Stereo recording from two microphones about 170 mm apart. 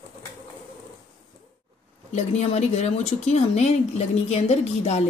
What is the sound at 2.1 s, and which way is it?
Speech, 40° left (ahead or behind).